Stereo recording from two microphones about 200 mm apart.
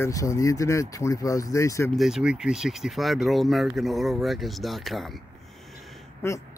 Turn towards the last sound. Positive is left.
turn(degrees=15)  # may be behind; listen again after turning